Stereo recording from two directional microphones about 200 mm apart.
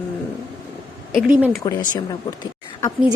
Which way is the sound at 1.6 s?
15° left (ahead or behind).